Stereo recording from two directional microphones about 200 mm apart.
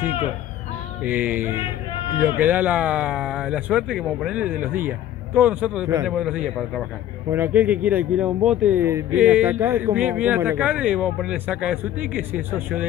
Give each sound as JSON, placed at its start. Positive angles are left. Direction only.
{"t": 1.0, "sound": "speech", "side_deg": -10}
{"t": 1.6, "sound": "speech", "side_deg": 25}
{"t": 2.1, "sound": "a man's voice", "side_deg": -10}